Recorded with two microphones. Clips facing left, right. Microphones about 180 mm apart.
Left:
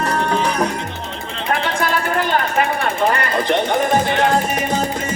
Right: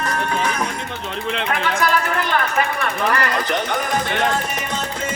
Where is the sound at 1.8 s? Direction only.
35° left (ahead or behind).